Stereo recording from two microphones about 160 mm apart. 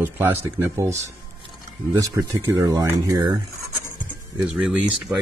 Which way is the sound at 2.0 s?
20° right (ahead or behind).